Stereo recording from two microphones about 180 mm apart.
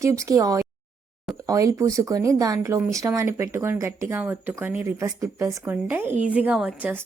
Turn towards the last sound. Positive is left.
turn(degrees=-5)  # may be behind; listen again after turning